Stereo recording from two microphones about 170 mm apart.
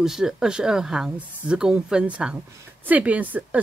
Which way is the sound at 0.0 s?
5° right (ahead or behind).